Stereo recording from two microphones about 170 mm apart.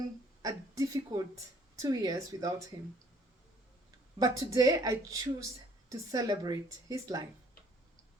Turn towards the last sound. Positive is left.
turn(degrees=-20)  # may be behind; listen again after turning